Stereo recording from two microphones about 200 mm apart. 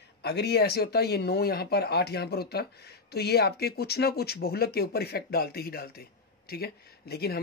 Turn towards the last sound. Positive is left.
turn(degrees=50)  # may be behind; listen again after turning